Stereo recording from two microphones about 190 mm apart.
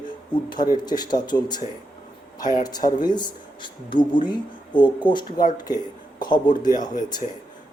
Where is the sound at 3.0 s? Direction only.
20° left (ahead or behind).